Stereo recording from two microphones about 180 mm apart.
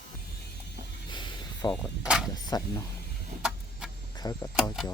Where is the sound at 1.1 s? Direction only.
25° left (ahead or behind).